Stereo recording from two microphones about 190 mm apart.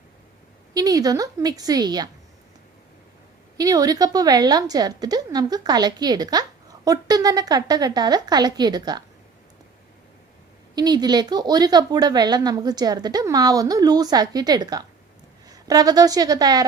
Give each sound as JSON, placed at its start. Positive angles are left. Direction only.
{"t": 0.7, "sound": "a woman's voice", "side_deg": -20}
{"t": 3.6, "sound": "a woman's voice", "side_deg": -20}
{"t": 10.8, "sound": "a woman's voice", "side_deg": -20}